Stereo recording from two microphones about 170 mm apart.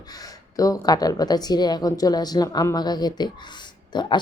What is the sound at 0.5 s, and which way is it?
Speech, 20° left (ahead or behind).